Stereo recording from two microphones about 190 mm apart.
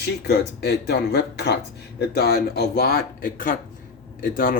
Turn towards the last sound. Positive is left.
turn(degrees=45)  # may be behind; listen again after turning